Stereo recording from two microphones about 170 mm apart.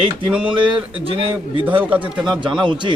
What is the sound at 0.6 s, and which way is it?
A man's voice, 30° right (ahead or behind).